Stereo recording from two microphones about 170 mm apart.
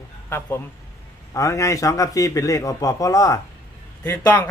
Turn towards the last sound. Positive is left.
turn(degrees=10)  # may be behind; listen again after turning